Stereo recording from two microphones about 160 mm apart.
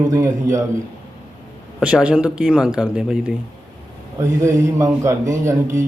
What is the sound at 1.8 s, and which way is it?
Speech, 5° right (ahead or behind).